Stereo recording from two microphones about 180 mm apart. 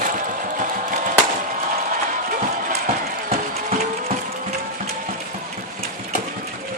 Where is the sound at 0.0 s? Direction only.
45° right (ahead or behind).